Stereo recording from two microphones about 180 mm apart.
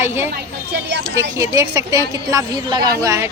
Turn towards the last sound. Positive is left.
turn(degrees=-15)  # may be behind; listen again after turning